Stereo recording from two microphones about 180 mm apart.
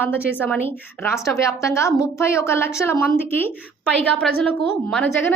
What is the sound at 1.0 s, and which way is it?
A woman's voice, 15° left (ahead or behind).